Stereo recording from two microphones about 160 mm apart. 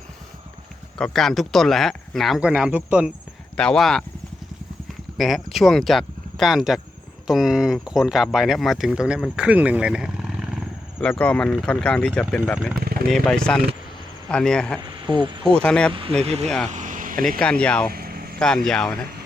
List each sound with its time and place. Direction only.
0.9 s speech: 5° left (ahead or behind)
3.6 s speech: 5° left (ahead or behind)
5.1 s speech: centre (ahead or behind)
12.7 s a sound: 70° right (ahead or behind)
13.1 s speech: 5° left (ahead or behind)
14.9 s speech: 30° right (ahead or behind)
15.4 s speech: 5° left (ahead or behind)
15.9 s speech: 35° right (ahead or behind)
16.6 s vehicle: 50° right (ahead or behind)
17.4 s speech: 5° left (ahead or behind)
17.9 s vehicle: 70° right (ahead or behind)
18.3 s speech: 5° left (ahead or behind)